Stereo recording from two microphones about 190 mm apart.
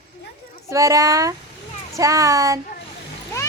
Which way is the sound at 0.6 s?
15° right (ahead or behind).